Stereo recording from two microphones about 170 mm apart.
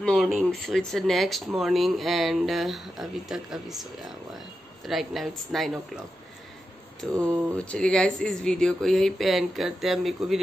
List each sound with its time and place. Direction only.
0.0 s speech: centre (ahead or behind)
7.2 s speech: 20° right (ahead or behind)
7.5 s speech: 5° left (ahead or behind)